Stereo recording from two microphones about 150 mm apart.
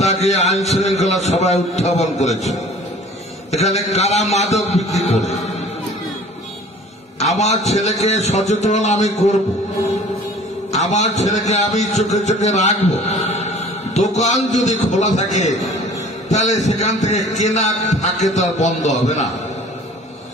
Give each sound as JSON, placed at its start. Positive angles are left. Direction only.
{"t": 0.0, "sound": "a sound", "side_deg": 50}
{"t": 0.7, "sound": "a man's voice", "side_deg": 50}
{"t": 3.5, "sound": "a man's voice", "side_deg": 45}
{"t": 7.2, "sound": "a man's voice", "side_deg": 45}
{"t": 10.7, "sound": "a man's voice", "side_deg": 50}